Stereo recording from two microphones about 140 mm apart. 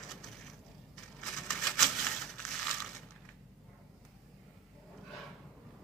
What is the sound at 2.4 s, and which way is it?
Crushing, centre (ahead or behind).